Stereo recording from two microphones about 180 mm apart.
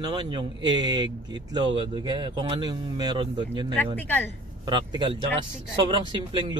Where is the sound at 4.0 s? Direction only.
10° left (ahead or behind).